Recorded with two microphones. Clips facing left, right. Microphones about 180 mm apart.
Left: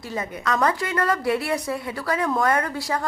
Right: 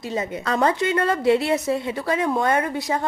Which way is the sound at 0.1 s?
25° right (ahead or behind).